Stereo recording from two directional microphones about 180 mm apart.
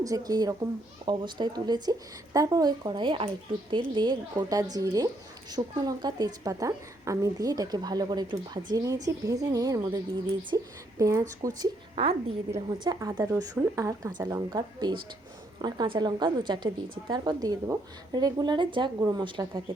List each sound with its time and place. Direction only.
0.0 s a woman's voice: 20° right (ahead or behind)